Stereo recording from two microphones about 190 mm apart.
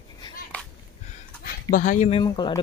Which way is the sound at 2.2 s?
20° left (ahead or behind).